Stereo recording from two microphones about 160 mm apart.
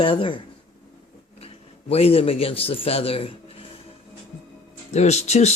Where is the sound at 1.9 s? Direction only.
40° left (ahead or behind).